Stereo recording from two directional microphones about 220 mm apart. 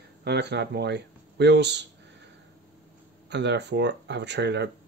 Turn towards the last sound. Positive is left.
turn(degrees=-50)  # may be behind; listen again after turning